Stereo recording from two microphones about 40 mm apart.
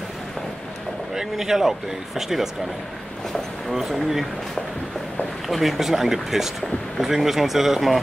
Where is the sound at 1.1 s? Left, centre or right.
Centre.